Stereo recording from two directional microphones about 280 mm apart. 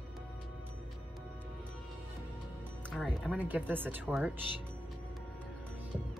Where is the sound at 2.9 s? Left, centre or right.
Centre.